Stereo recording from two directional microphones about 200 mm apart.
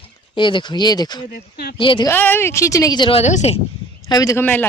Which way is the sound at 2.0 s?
10° left (ahead or behind).